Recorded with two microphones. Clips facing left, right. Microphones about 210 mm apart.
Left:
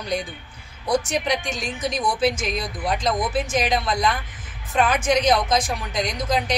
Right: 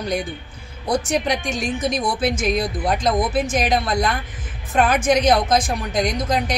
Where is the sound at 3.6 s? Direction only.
55° right (ahead or behind).